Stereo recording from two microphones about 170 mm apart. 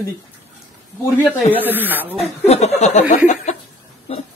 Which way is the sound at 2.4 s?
40° left (ahead or behind).